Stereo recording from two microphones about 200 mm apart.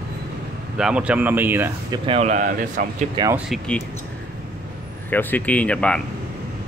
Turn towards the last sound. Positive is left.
turn(degrees=5)  # may be behind; listen again after turning